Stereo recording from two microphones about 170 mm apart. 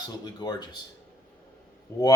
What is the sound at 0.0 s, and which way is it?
Speech, 25° left (ahead or behind).